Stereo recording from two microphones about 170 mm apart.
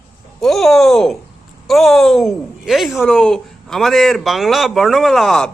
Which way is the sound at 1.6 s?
Centre (ahead or behind).